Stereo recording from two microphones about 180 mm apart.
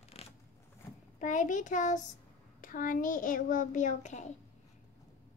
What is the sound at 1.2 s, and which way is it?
A child's voice, 45° left (ahead or behind).